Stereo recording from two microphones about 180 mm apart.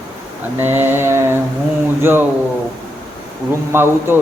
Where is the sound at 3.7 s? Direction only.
15° right (ahead or behind).